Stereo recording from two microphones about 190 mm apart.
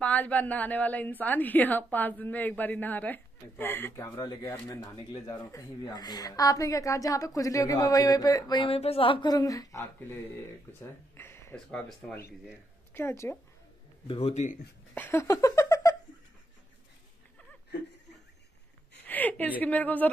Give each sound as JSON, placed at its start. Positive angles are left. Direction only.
{"t": 0.0, "sound": "a woman's voice", "side_deg": 10}
{"t": 14.0, "sound": "speech", "side_deg": 30}
{"t": 15.0, "sound": "a sound", "side_deg": 15}
{"t": 19.0, "sound": "a woman's voice", "side_deg": 10}